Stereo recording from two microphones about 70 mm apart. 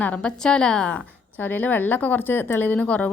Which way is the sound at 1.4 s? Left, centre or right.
Left.